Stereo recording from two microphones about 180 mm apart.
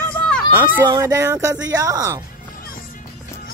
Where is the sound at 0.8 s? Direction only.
20° right (ahead or behind).